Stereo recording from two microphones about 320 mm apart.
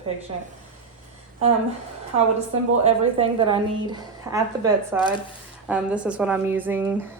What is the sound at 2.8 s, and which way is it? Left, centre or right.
A woman's voice, centre.